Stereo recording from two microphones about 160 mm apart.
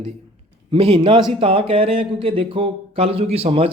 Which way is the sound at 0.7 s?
35° right (ahead or behind).